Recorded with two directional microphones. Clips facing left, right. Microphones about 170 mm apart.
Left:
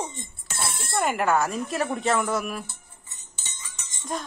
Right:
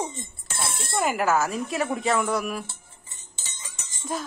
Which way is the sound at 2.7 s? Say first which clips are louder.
Even; 25° right (ahead or behind).